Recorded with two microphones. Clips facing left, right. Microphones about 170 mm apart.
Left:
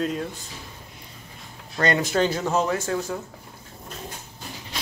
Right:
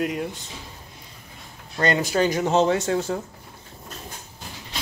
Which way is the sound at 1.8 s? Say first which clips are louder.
Even; 25° right (ahead or behind).